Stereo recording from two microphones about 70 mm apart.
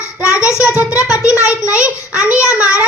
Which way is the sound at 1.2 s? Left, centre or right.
Left.